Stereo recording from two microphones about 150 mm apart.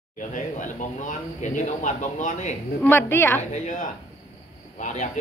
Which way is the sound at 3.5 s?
55° left (ahead or behind).